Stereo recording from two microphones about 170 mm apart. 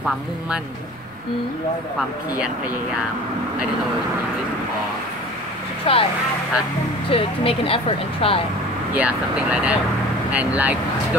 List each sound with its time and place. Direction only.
5.9 s speech: 35° left (ahead or behind)
7.1 s speech: 35° left (ahead or behind)
8.9 s speech: 10° right (ahead or behind)